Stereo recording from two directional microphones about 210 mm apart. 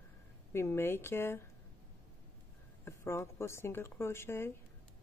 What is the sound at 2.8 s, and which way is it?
A man's voice, 10° left (ahead or behind).